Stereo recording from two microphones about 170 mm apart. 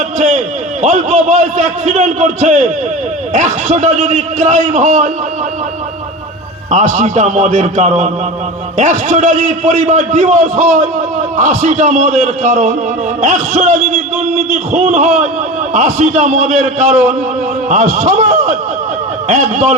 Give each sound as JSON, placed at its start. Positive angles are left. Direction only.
{"t": 0.2, "sound": "a man's voice", "side_deg": -45}
{"t": 6.9, "sound": "a man's voice", "side_deg": -45}